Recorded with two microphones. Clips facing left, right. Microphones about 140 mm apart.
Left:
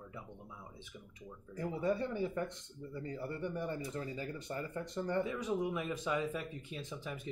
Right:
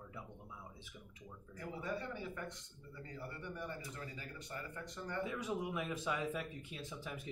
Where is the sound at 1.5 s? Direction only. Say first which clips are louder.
Left 8 dB; 35° left (ahead or behind).